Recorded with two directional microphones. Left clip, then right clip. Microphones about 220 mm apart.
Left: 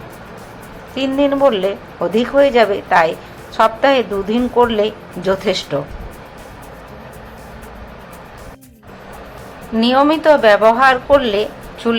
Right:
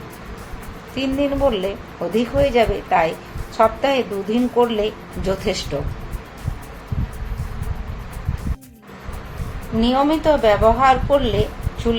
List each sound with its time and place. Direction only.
0.9 s a woman's voice: 15° left (ahead or behind)
9.8 s a woman's voice: 15° left (ahead or behind)